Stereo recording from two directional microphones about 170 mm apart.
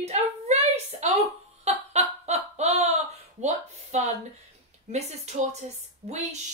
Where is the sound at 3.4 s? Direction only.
40° right (ahead or behind).